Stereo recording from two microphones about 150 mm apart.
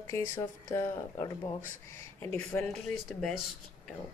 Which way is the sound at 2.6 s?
Centre (ahead or behind).